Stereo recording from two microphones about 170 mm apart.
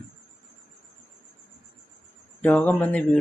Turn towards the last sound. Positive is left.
turn(degrees=10)  # may be behind; listen again after turning